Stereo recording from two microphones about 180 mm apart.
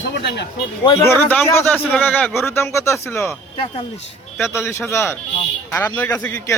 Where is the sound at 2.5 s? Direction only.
15° left (ahead or behind).